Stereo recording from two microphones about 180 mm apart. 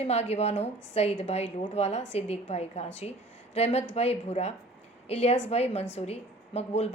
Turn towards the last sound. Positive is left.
turn(degrees=35)  # may be behind; listen again after turning